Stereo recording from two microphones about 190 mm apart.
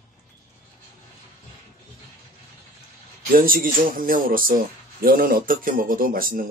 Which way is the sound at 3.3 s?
50° right (ahead or behind).